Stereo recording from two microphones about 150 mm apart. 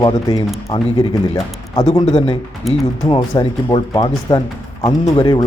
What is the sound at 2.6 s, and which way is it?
Speech, centre (ahead or behind).